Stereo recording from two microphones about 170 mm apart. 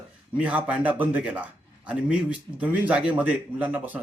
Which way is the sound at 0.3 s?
5° right (ahead or behind).